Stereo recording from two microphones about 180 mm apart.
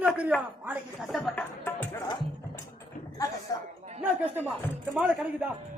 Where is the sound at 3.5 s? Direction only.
20° left (ahead or behind).